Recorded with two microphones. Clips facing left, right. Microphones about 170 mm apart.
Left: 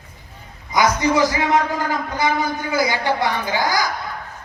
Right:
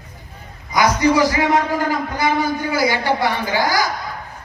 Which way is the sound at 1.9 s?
20° left (ahead or behind).